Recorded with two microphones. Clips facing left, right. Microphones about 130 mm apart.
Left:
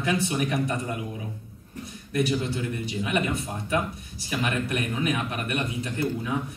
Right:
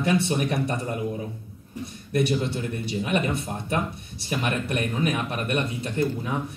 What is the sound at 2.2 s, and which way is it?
Speech, 30° right (ahead or behind).